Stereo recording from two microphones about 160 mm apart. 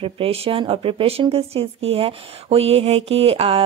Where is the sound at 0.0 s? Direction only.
35° right (ahead or behind).